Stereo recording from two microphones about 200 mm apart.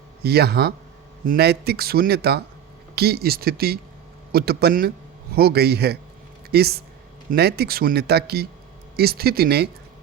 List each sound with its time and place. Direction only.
0.2 s speech: 55° right (ahead or behind)